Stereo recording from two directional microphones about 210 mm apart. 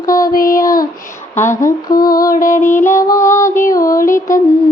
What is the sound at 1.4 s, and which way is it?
Humming, 10° left (ahead or behind).